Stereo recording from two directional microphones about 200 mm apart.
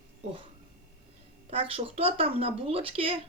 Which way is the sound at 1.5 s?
30° right (ahead or behind).